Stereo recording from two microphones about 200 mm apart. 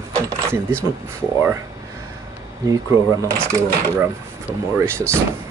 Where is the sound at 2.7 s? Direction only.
15° right (ahead or behind).